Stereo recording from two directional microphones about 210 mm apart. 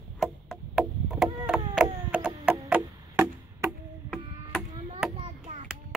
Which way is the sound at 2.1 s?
5° right (ahead or behind).